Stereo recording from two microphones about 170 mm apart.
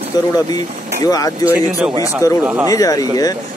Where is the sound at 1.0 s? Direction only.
20° left (ahead or behind).